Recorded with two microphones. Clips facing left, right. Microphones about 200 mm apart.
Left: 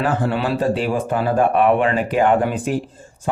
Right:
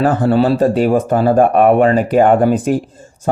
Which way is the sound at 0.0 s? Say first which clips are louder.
Right 8 dB; 40° right (ahead or behind).